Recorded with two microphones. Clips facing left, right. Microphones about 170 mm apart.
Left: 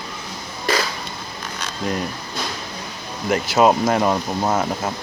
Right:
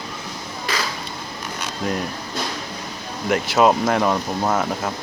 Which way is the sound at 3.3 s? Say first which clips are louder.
Left 1 dB; centre (ahead or behind).